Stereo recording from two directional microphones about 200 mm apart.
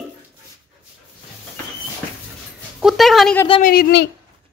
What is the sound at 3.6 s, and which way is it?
Speech, 50° left (ahead or behind).